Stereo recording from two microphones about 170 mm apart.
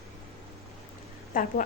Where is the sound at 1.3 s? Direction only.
55° left (ahead or behind).